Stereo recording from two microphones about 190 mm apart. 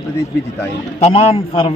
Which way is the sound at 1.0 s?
30° left (ahead or behind).